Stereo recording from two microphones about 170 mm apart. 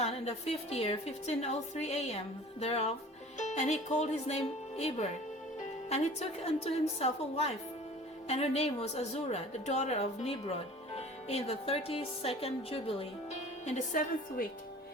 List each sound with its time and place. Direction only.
0.0 s a woman's voice: 35° left (ahead or behind)
13.7 s a woman's voice: 50° left (ahead or behind)